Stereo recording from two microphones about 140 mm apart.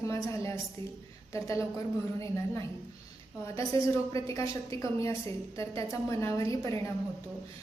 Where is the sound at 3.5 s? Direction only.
25° left (ahead or behind).